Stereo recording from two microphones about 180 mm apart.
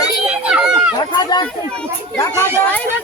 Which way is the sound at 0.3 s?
5° right (ahead or behind).